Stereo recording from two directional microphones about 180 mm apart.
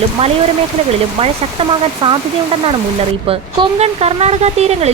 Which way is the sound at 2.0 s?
25° right (ahead or behind).